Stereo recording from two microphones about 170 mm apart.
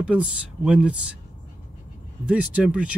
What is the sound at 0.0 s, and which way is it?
Speech, 5° right (ahead or behind).